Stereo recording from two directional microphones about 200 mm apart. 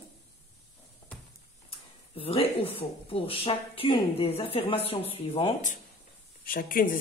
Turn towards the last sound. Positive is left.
turn(degrees=45)  # may be behind; listen again after turning